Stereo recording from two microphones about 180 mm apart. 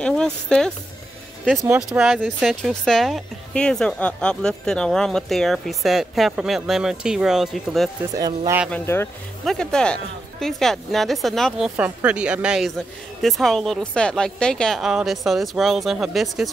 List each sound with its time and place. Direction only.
0.0 s a woman's voice: 5° left (ahead or behind)
1.8 s a woman's voice: 5° right (ahead or behind)
8.2 s a man's voice: 20° right (ahead or behind)
8.6 s speech: 10° left (ahead or behind)
9.4 s a woman's voice: centre (ahead or behind)